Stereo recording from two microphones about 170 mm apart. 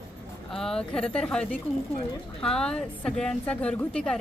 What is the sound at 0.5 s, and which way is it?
Speech, 5° left (ahead or behind).